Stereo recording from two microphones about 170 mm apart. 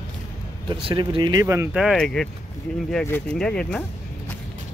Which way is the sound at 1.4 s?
15° right (ahead or behind).